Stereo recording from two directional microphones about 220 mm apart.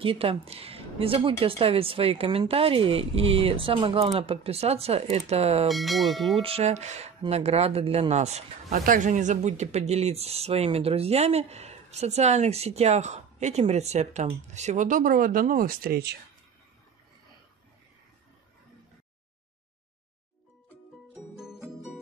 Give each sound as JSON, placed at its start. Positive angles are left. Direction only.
{"t": 0.0, "sound": "speech", "side_deg": -25}
{"t": 5.7, "sound": "speech", "side_deg": 0}
{"t": 6.4, "sound": "speech", "side_deg": -30}